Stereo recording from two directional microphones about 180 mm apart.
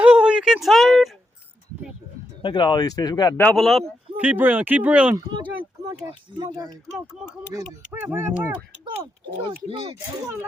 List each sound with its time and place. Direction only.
0.0 s a sound: 5° right (ahead or behind)
2.4 s speech: 25° left (ahead or behind)
3.4 s speech: centre (ahead or behind)
5.1 s speech: 25° right (ahead or behind); by 8.5 s 10° right (ahead or behind)